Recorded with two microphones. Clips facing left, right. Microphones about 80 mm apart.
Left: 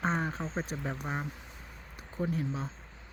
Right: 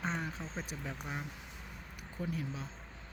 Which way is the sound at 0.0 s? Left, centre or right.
Left.